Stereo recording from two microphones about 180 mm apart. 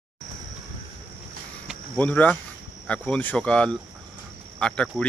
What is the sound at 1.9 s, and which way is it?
Speech, 10° left (ahead or behind).